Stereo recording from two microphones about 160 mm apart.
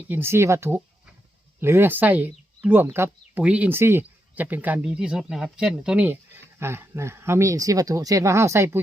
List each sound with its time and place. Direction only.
0.1 s speech: 15° right (ahead or behind)